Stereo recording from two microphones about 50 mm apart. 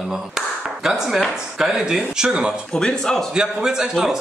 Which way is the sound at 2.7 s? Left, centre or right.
Centre.